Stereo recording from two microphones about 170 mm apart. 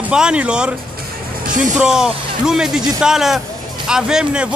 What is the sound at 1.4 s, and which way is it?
Speech, 50° right (ahead or behind).